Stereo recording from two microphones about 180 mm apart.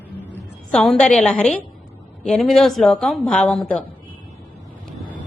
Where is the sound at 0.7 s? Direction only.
5° left (ahead or behind).